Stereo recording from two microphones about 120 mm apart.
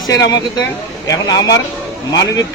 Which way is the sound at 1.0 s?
35° left (ahead or behind).